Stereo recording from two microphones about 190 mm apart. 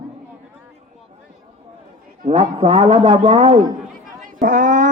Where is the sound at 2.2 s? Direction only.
35° right (ahead or behind).